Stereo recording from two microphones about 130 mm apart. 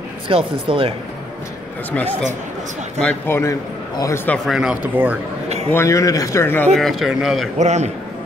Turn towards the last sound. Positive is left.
turn(degrees=-60)  # may be behind; listen again after turning